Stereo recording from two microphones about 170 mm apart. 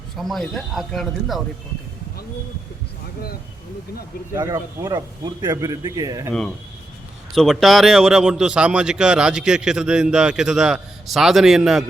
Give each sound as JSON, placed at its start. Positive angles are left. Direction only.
{"t": 0.2, "sound": "speech", "side_deg": 0}
{"t": 4.4, "sound": "speech", "side_deg": -15}
{"t": 7.3, "sound": "speech", "side_deg": 0}